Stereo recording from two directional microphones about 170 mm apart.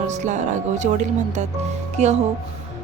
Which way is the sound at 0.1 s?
45° right (ahead or behind).